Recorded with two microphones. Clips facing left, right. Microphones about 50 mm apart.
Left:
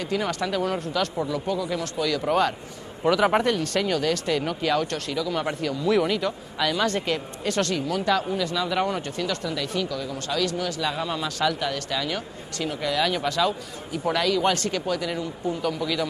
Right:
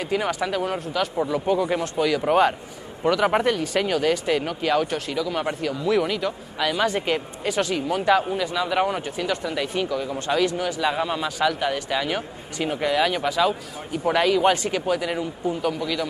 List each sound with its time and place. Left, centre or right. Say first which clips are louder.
0.0 s speech: right 2 dB; centre
1.3 s speech: right 5 dB; right
2.0 s speech: right 3 dB; centre
3.0 s speech: even; centre